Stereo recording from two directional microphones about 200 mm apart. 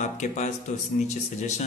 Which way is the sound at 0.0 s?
35° left (ahead or behind).